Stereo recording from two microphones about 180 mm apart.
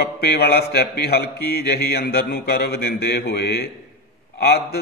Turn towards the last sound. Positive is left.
turn(degrees=65)  # may be behind; listen again after turning